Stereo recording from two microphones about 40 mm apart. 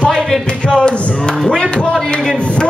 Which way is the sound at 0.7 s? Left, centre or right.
Left.